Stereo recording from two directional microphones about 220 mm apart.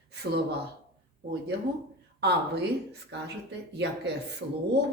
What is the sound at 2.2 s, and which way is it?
Speech, 50° right (ahead or behind).